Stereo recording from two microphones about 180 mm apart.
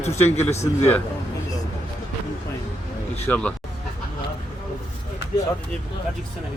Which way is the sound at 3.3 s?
10° left (ahead or behind).